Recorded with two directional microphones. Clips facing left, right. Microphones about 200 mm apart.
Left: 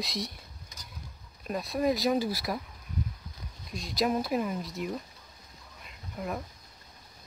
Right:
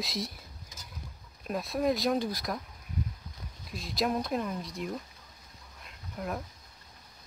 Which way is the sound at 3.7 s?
Centre (ahead or behind).